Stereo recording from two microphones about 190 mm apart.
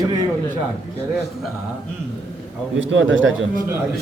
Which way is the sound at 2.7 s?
90° right.